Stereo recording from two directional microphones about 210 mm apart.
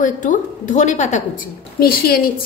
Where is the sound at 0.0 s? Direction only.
40° left (ahead or behind).